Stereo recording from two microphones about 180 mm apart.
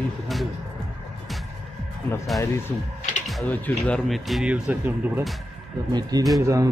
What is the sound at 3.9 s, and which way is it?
Speech, centre (ahead or behind).